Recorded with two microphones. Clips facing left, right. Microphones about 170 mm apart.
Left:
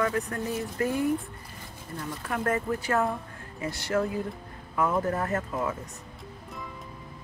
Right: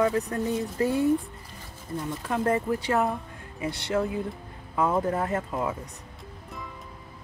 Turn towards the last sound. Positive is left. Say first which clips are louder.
# right 1 dB
turn(degrees=-15)  # may be behind; listen again after turning